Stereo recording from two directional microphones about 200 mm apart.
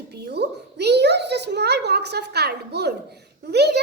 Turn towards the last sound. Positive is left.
turn(degrees=-55)  # may be behind; listen again after turning